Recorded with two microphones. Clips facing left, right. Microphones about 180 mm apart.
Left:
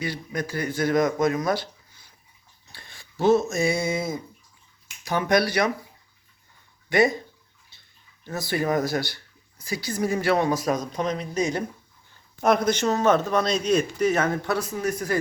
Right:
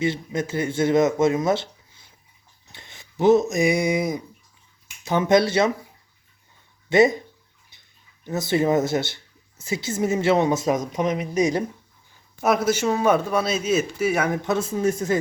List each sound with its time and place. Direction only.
0.0 s speech: 25° right (ahead or behind)
6.9 s speech: 20° right (ahead or behind)
7.7 s a sound: 15° right (ahead or behind)
8.2 s speech: 20° right (ahead or behind)